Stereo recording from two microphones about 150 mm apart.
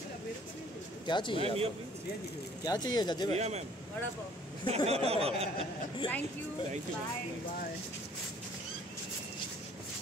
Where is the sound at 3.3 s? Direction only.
45° right (ahead or behind).